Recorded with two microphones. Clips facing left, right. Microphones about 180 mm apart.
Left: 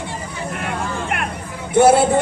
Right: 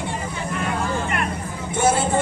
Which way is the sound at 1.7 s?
65° left (ahead or behind).